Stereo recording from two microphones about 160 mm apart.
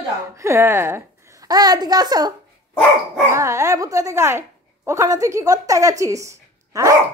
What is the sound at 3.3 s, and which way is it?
A woman's voice, 20° right (ahead or behind).